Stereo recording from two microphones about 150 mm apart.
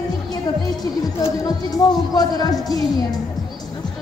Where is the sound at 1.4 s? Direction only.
25° left (ahead or behind).